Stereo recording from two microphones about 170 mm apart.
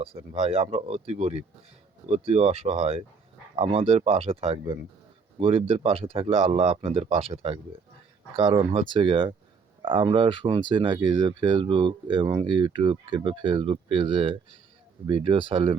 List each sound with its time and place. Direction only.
0.0 s speech: 35° right (ahead or behind)